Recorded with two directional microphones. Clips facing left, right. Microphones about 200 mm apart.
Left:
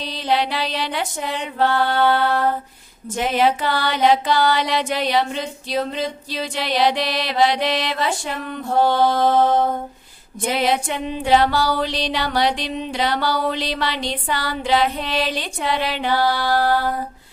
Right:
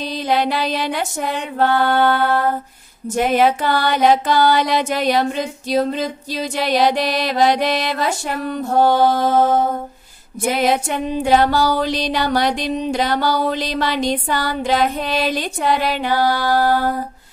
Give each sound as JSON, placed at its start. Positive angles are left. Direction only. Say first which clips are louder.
{"t": 0.0, "sound": "music", "louder": "right 3 dB", "side_deg": -45}
{"t": 3.3, "sound": "music", "louder": "right 1 dB", "side_deg": -45}
{"t": 10.5, "sound": "music", "louder": "right 2 dB", "side_deg": -45}